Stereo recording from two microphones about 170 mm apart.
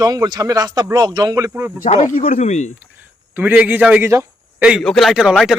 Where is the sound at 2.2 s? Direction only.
40° left (ahead or behind).